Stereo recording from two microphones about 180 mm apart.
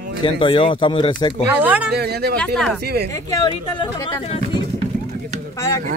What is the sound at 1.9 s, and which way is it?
Speech, 60° right (ahead or behind).